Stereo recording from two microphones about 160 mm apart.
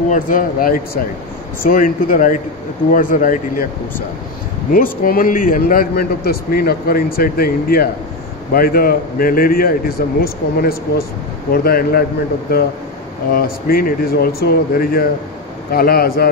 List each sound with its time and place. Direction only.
0.1 s speech: 60° left (ahead or behind)
5.0 s a man's voice: 65° left (ahead or behind)